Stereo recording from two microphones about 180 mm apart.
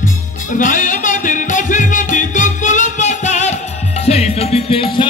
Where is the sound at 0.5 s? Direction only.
45° left (ahead or behind).